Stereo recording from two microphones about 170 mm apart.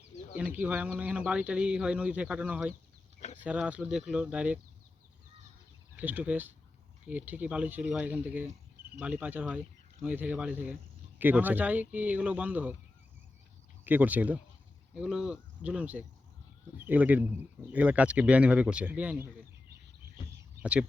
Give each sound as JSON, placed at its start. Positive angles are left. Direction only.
{"t": 0.3, "sound": "speech", "side_deg": -10}
{"t": 6.0, "sound": "speech", "side_deg": -10}
{"t": 13.8, "sound": "speech", "side_deg": -10}
{"t": 20.6, "sound": "speech", "side_deg": -5}